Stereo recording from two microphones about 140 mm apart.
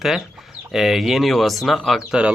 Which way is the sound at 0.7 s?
5° right (ahead or behind).